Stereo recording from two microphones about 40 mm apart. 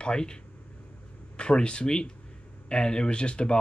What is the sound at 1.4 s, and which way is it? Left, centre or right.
Speech, left.